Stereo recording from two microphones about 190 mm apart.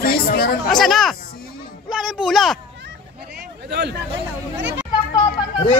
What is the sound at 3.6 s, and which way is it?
Speech, 60° right (ahead or behind).